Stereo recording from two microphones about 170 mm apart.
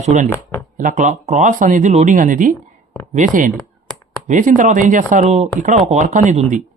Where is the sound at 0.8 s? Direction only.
45° right (ahead or behind).